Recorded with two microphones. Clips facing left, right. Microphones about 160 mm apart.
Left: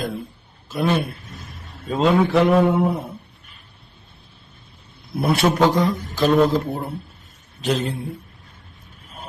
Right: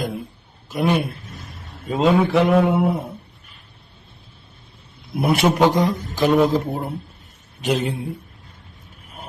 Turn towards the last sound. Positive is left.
turn(degrees=-15)  # may be behind; listen again after turning